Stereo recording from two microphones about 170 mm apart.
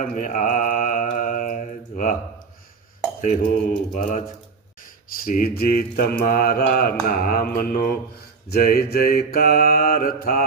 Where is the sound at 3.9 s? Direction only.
50° left (ahead or behind).